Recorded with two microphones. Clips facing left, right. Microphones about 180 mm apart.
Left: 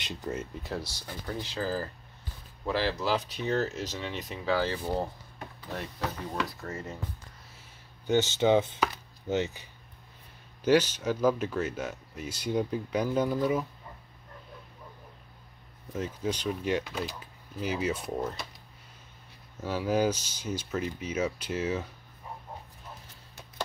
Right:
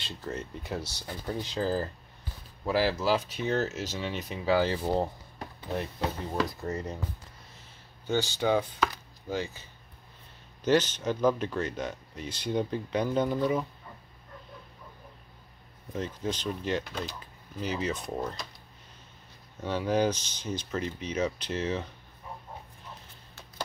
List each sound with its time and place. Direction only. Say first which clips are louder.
0.0 s speech: left 2 dB; 15° left (ahead or behind)
1.2 s speech: right 3 dB; 20° right (ahead or behind)
2.6 s speech: right 3 dB; 10° right (ahead or behind)
4.5 s speech: right 3 dB; 15° right (ahead or behind)
8.1 s speech: left 3 dB; 20° left (ahead or behind)
8.8 s chopping: even; 20° left (ahead or behind)
10.6 s speech: left 1 dB; 10° left (ahead or behind)
15.9 s speech: left 1 dB; 10° left (ahead or behind)
19.6 s speech: even; 5° left (ahead or behind)